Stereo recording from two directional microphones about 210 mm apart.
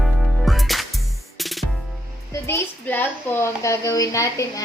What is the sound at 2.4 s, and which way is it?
A woman's voice, 10° left (ahead or behind).